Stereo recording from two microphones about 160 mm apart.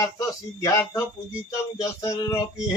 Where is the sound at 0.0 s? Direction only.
20° left (ahead or behind).